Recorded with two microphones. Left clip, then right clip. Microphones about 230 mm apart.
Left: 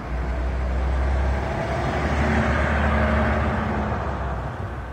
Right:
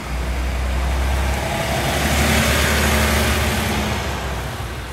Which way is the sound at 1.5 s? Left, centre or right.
Right.